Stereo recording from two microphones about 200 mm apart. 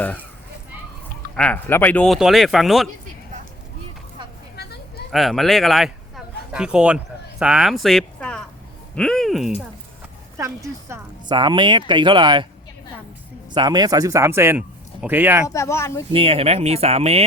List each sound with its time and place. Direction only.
0.0 s speech: 5° left (ahead or behind)
1.4 s speech: 5° left (ahead or behind)
4.5 s a sound: 55° left (ahead or behind)
5.1 s speech: centre (ahead or behind)
10.3 s a woman's voice: 15° right (ahead or behind)
13.5 s speech: 20° right (ahead or behind)
15.4 s speech: 15° left (ahead or behind)
16.1 s speech: 30° right (ahead or behind)